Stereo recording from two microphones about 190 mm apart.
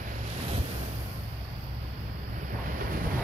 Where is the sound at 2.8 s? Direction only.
50° right (ahead or behind).